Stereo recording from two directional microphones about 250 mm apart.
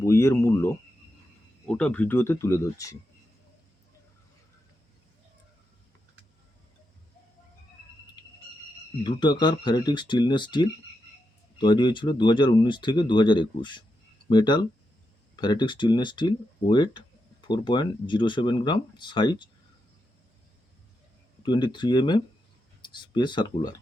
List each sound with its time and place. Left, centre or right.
0.0 s speech: centre
8.2 s cricket: centre
9.0 s speech: centre
21.4 s speech: centre